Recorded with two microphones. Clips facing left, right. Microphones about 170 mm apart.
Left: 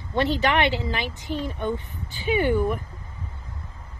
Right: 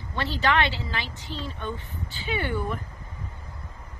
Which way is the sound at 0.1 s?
20° left (ahead or behind).